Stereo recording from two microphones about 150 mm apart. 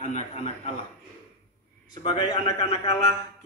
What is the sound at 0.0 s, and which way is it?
Speech, 45° left (ahead or behind).